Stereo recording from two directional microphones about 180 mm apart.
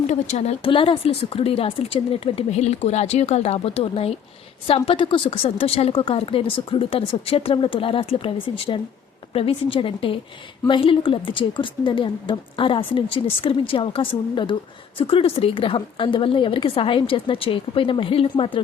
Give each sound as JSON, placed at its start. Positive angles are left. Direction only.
{"t": 0.1, "sound": "a woman's voice", "side_deg": 40}